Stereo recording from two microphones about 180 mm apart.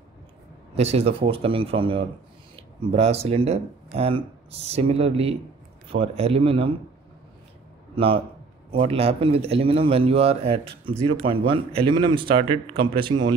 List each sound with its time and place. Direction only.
0.7 s speech: 35° right (ahead or behind)
7.9 s a man's voice: 30° right (ahead or behind)